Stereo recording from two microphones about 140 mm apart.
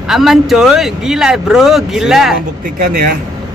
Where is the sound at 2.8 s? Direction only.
80° right.